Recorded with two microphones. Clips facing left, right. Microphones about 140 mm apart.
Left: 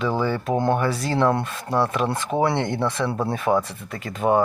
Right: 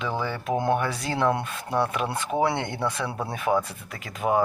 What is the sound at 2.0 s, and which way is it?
Speech, 35° left (ahead or behind).